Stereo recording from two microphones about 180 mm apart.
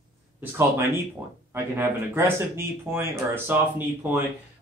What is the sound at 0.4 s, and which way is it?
Speech, 15° right (ahead or behind).